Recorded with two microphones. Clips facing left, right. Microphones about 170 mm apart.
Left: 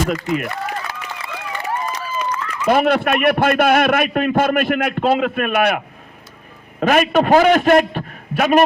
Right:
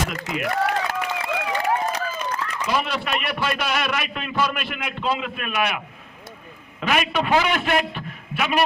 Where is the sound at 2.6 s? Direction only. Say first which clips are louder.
Left 11 dB; 55° left (ahead or behind).